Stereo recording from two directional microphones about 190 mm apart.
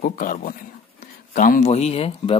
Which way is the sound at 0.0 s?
50° left (ahead or behind).